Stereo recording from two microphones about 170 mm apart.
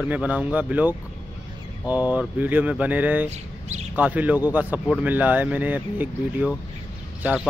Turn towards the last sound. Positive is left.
turn(degrees=-5)  # may be behind; listen again after turning